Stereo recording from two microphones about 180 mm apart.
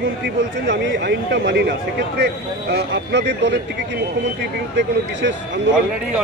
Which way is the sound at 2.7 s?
75° right (ahead or behind).